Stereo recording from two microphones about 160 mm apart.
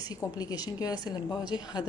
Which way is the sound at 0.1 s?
25° left (ahead or behind).